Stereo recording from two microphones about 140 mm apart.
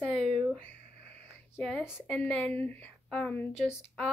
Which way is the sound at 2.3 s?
10° left (ahead or behind).